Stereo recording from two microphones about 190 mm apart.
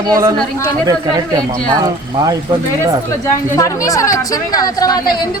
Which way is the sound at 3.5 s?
15° left (ahead or behind).